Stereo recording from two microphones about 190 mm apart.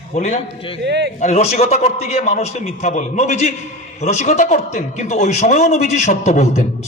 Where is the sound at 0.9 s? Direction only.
65° right (ahead or behind).